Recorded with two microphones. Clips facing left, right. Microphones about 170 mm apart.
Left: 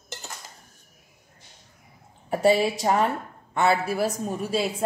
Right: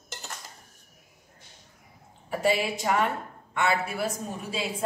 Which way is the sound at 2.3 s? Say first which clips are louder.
Left 5 dB; 40° left (ahead or behind).